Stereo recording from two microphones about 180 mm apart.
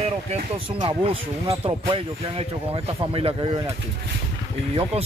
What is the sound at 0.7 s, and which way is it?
Speech, 30° right (ahead or behind).